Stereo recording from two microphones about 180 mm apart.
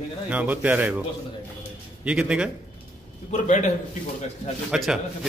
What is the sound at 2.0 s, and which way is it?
Speech, 5° right (ahead or behind).